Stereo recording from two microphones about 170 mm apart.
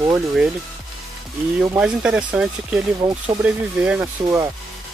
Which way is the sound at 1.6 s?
5° right (ahead or behind).